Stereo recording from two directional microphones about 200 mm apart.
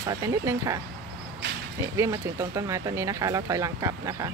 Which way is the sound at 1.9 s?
15° right (ahead or behind).